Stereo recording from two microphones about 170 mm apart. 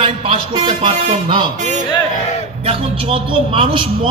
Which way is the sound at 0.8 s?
30° right (ahead or behind).